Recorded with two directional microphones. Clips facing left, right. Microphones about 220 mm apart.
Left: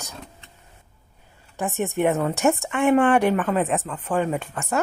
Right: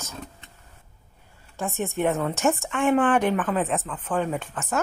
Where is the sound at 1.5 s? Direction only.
15° left (ahead or behind).